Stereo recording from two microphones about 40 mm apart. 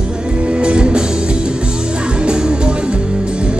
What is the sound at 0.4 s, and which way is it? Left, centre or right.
Music, right.